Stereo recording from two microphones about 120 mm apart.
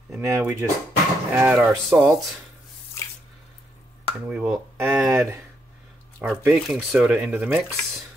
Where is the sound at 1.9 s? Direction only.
10° right (ahead or behind).